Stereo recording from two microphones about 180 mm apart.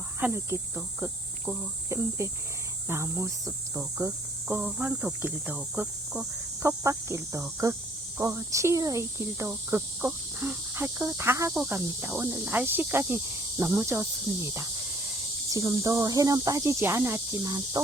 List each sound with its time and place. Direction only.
0.2 s speech: 15° right (ahead or behind)
0.8 s cricket: 5° right (ahead or behind)
1.9 s speech: 15° right (ahead or behind)
6.6 s speech: 15° right (ahead or behind)
15.5 s speech: 20° right (ahead or behind)